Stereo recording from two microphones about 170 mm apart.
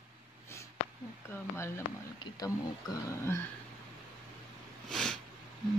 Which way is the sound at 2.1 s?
25° left (ahead or behind).